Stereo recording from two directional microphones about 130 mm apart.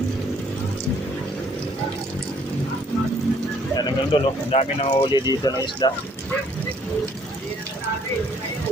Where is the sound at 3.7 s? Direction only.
30° left (ahead or behind).